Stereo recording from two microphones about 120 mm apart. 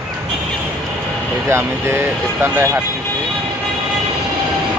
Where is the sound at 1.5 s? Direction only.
20° right (ahead or behind).